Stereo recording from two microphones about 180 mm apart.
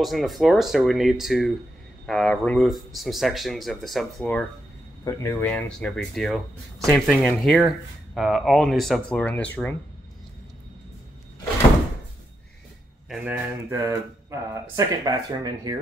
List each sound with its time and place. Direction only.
0.0 s speech: centre (ahead or behind)
13.1 s speech: 10° right (ahead or behind)